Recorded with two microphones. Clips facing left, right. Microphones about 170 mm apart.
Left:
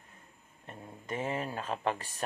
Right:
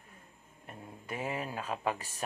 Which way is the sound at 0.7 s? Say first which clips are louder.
Left 2 dB; 10° right (ahead or behind).